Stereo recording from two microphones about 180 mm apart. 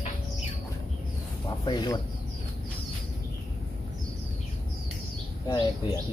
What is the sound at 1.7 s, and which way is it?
Speech, 20° left (ahead or behind).